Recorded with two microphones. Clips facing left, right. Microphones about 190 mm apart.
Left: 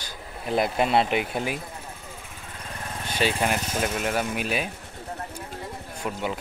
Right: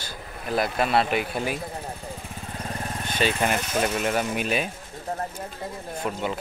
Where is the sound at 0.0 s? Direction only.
20° left (ahead or behind).